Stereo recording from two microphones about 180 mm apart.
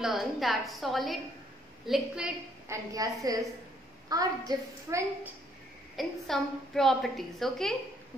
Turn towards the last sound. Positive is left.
turn(degrees=0)  # may be behind; listen again after turning